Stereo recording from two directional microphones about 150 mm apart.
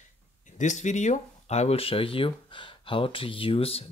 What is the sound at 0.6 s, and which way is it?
Speech, 55° left (ahead or behind).